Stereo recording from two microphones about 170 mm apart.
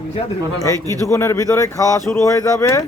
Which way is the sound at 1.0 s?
15° left (ahead or behind).